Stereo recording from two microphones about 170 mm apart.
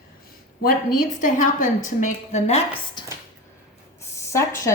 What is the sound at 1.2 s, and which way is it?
A woman's voice, 50° left (ahead or behind).